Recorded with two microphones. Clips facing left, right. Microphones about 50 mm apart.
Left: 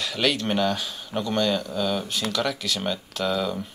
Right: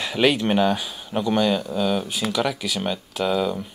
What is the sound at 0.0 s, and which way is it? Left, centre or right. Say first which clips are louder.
Speech: right 5 dB; centre.